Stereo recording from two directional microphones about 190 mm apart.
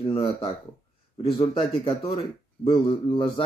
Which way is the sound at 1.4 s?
25° left (ahead or behind).